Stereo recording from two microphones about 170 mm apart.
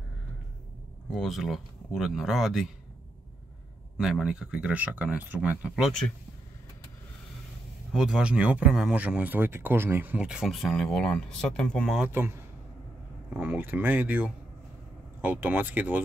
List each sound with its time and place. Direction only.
1.1 s speech: centre (ahead or behind)
4.0 s speech: 5° right (ahead or behind)
5.9 s speech: 5° left (ahead or behind)
7.9 s speech: 5° right (ahead or behind)
12.0 s speech: 15° right (ahead or behind)